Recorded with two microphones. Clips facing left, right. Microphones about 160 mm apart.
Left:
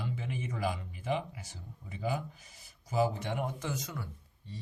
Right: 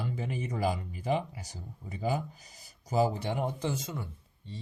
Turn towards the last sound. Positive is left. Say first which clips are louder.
# right 2 dB
turn(degrees=-25)  # may be behind; listen again after turning